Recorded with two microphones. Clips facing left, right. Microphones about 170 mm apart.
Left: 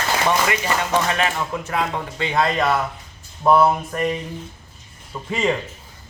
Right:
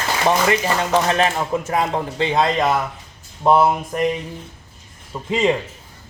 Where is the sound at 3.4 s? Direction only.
15° right (ahead or behind).